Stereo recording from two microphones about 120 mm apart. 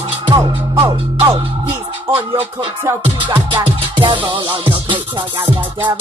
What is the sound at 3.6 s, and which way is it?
Music, 40° right (ahead or behind).